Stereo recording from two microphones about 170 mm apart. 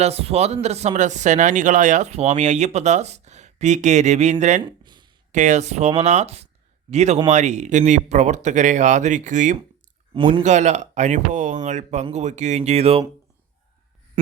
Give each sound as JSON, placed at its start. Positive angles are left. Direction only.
{"t": 0.0, "sound": "speech", "side_deg": -35}
{"t": 4.6, "sound": "a sound", "side_deg": -25}
{"t": 5.3, "sound": "speech", "side_deg": -45}
{"t": 10.2, "sound": "speech", "side_deg": -30}
{"t": 10.4, "sound": "speech", "side_deg": -45}